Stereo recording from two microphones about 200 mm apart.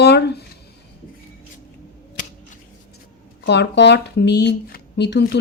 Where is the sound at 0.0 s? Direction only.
60° left (ahead or behind).